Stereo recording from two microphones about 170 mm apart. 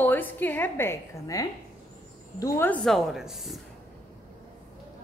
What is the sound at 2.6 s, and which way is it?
Speech, centre (ahead or behind).